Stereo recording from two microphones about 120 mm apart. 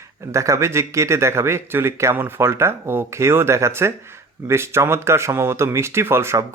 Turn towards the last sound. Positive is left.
turn(degrees=-20)  # may be behind; listen again after turning